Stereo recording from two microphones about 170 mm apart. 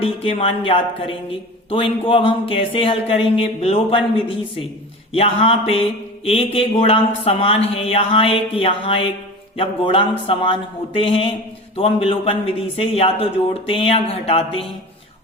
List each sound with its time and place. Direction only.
0.0 s a man's voice: 35° left (ahead or behind)